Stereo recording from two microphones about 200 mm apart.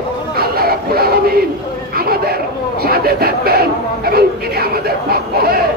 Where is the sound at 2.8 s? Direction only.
50° right (ahead or behind).